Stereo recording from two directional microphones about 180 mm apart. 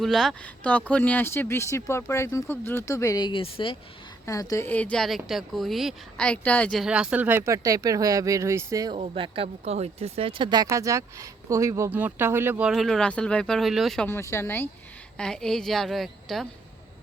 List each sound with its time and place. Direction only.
0.0 s speech: centre (ahead or behind); by 3.8 s 30° left (ahead or behind)
4.3 s speech: 20° left (ahead or behind); by 9.0 s 20° right (ahead or behind)
9.0 s speech: 30° right (ahead or behind); by 14.1 s centre (ahead or behind)
14.1 s speech: 15° left (ahead or behind)